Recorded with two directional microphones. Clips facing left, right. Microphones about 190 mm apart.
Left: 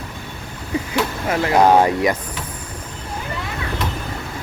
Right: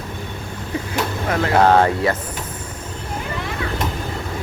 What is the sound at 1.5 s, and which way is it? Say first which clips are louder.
Speech: left 1 dB; 10° left (ahead or behind).